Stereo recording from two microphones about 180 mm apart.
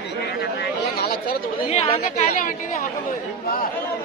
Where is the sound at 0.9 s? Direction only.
55° left (ahead or behind).